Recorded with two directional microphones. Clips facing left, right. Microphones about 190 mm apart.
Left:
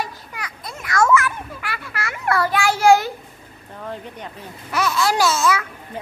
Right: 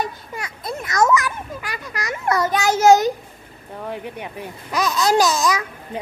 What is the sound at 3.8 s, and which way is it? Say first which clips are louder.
A child's voice: right 2 dB; 15° right (ahead or behind).